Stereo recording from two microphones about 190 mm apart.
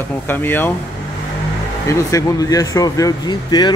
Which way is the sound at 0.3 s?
10° left (ahead or behind).